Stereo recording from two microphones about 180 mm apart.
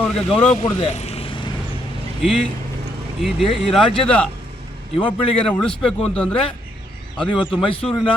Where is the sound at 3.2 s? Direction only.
Centre (ahead or behind).